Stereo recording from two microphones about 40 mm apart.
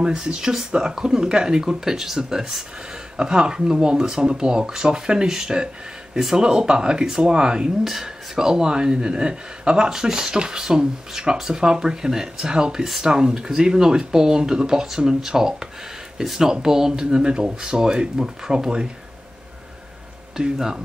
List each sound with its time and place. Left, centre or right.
0.0 s speech: right
7.8 s speech: centre
20.3 s speech: centre